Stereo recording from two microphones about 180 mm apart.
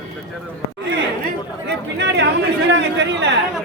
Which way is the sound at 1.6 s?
75° right (ahead or behind).